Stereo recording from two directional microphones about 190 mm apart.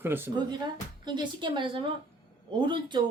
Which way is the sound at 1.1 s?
25° right (ahead or behind).